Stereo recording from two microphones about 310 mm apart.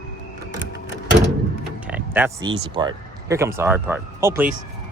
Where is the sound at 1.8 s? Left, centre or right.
Centre.